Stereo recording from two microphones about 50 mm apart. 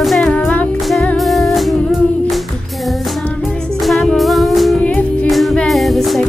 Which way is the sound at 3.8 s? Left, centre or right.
Centre.